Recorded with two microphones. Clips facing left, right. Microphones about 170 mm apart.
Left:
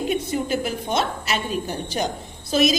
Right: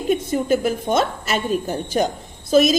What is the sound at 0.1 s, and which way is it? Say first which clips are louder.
A woman's voice: right 9 dB; 45° right (ahead or behind).